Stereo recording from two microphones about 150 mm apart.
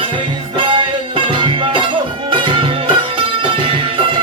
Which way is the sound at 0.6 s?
35° right (ahead or behind).